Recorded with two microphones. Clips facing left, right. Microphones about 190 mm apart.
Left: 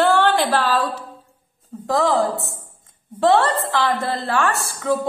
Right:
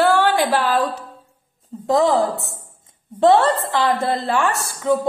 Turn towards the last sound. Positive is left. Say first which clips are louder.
# right 2 dB
turn(degrees=-20)  # may be behind; listen again after turning